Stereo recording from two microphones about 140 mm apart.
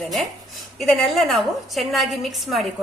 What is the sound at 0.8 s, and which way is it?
A woman's voice, centre (ahead or behind).